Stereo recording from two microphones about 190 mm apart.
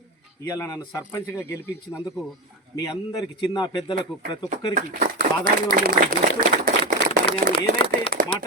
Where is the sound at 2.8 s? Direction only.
25° left (ahead or behind).